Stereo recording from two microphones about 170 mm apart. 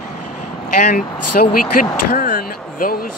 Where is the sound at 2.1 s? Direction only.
55° left (ahead or behind).